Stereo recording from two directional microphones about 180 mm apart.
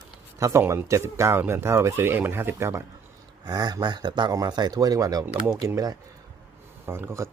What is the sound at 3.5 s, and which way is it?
Speech, 20° right (ahead or behind).